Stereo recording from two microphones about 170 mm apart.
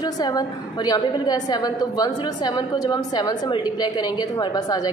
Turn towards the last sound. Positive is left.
turn(degrees=25)  # may be behind; listen again after turning